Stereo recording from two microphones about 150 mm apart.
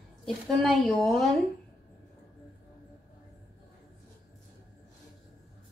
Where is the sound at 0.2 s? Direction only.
5° left (ahead or behind).